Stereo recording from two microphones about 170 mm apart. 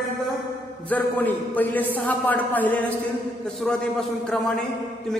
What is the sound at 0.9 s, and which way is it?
A man's voice, 10° left (ahead or behind).